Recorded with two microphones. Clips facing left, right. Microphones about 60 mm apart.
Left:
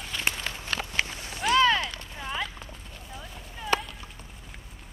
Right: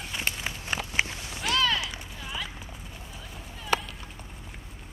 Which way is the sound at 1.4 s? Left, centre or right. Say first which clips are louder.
Left 5 dB; left.